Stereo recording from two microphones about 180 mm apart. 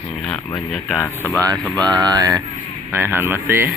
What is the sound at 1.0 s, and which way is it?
Speech, 10° left (ahead or behind).